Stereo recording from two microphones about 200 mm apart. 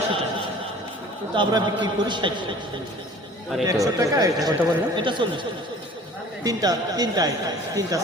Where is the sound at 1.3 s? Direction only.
20° right (ahead or behind).